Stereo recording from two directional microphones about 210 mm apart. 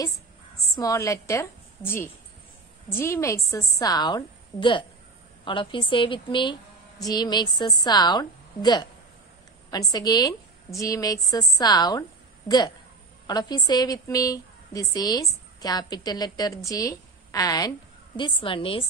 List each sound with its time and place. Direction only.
0.7 s a woman's voice: 15° left (ahead or behind)